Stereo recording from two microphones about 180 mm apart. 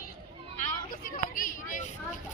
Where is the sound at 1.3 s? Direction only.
50° left (ahead or behind).